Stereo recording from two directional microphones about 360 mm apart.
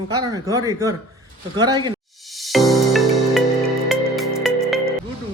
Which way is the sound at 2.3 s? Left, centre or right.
Centre.